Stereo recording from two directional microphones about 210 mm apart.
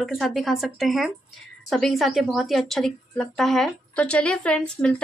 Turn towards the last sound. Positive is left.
turn(degrees=5)  # may be behind; listen again after turning